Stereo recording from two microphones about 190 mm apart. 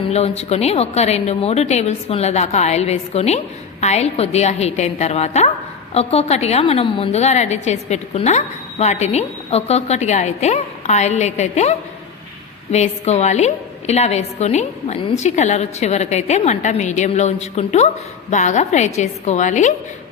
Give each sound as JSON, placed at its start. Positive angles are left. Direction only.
{"t": 0.1, "sound": "a woman's voice", "side_deg": 35}